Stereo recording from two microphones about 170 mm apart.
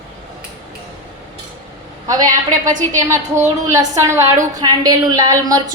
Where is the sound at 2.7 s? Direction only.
50° right (ahead or behind).